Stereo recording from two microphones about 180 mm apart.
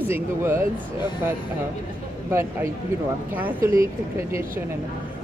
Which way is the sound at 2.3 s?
15° right (ahead or behind).